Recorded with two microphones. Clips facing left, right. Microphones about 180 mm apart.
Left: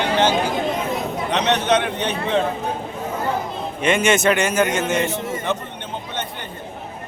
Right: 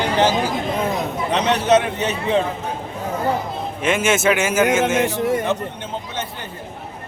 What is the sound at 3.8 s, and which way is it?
Speech, centre (ahead or behind).